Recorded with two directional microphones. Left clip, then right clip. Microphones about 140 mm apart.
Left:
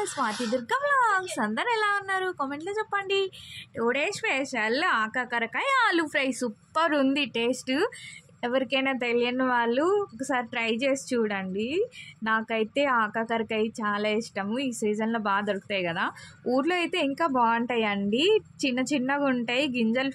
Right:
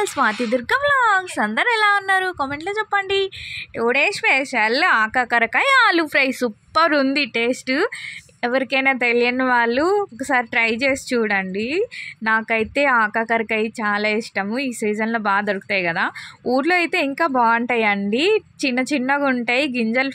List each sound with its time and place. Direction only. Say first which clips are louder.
0.0 s a woman's voice: right 9 dB; 50° right (ahead or behind); by 20.1 s 30° right (ahead or behind)